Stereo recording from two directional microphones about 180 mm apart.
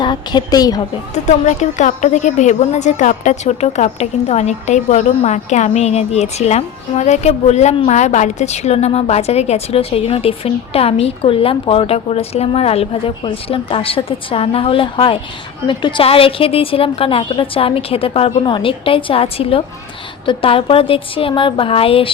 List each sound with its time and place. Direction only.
0.0 s a woman's voice: 25° left (ahead or behind)
1.1 s a woman's voice: 40° left (ahead or behind)